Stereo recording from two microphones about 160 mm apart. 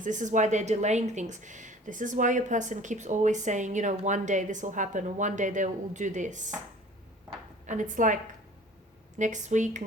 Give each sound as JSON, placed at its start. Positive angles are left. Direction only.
{"t": 0.0, "sound": "a woman's voice", "side_deg": -50}
{"t": 7.7, "sound": "a woman's voice", "side_deg": -55}